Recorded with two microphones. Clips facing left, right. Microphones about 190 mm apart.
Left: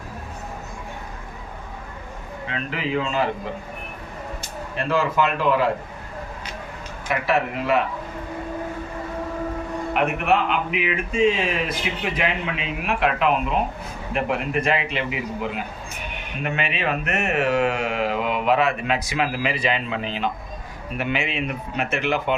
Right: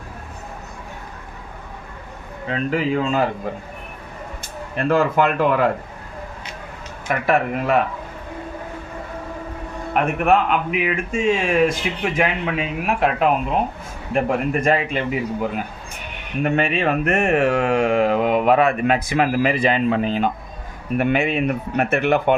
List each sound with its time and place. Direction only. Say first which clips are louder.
2.5 s speech: right 6 dB; 45° right (ahead or behind)
4.8 s speech: right 4 dB; 55° right (ahead or behind)
7.1 s speech: right 3 dB; 50° right (ahead or behind)
9.9 s speech: right 4 dB; 45° right (ahead or behind)